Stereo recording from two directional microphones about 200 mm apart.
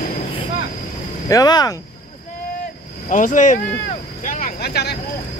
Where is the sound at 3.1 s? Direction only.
40° left (ahead or behind).